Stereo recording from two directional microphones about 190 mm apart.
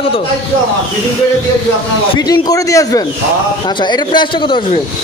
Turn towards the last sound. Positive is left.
turn(degrees=25)  # may be behind; listen again after turning